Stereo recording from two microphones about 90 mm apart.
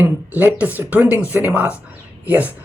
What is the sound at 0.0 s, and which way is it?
Speech, 25° right (ahead or behind).